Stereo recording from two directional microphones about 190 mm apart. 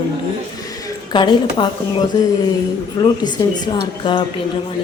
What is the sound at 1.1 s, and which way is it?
Speech, 25° left (ahead or behind).